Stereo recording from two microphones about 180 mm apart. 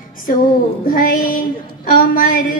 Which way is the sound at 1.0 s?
50° left (ahead or behind).